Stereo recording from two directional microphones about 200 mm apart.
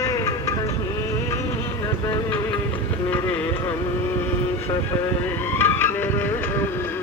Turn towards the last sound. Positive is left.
turn(degrees=10)  # may be behind; listen again after turning